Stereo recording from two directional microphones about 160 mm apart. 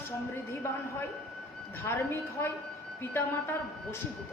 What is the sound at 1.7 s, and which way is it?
A man's voice, 10° left (ahead or behind).